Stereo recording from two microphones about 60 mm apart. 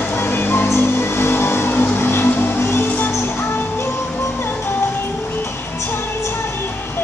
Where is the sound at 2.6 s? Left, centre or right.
Left.